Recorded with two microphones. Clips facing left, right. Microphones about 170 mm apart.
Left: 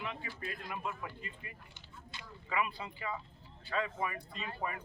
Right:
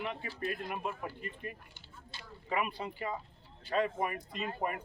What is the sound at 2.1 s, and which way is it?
Speech, 40° right (ahead or behind).